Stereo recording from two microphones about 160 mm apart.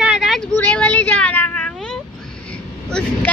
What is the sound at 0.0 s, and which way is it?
Vehicle, 5° right (ahead or behind).